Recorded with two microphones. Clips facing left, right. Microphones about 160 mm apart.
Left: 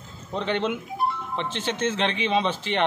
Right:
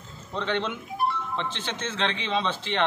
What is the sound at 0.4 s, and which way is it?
A man's voice, 15° left (ahead or behind).